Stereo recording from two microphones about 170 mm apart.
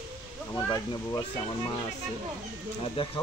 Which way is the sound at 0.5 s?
20° left (ahead or behind).